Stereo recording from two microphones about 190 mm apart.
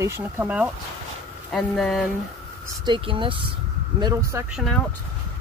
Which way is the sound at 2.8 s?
25° right (ahead or behind).